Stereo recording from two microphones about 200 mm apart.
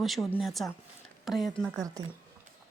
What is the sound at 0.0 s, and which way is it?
Speech, centre (ahead or behind).